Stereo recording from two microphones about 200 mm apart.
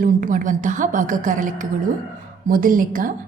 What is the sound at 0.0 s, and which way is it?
A woman's voice, 40° right (ahead or behind).